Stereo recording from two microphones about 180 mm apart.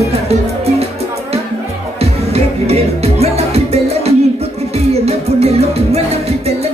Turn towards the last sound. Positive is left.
turn(degrees=-35)  # may be behind; listen again after turning